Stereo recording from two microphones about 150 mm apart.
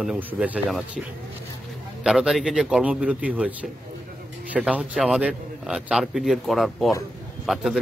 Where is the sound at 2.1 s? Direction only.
Centre (ahead or behind).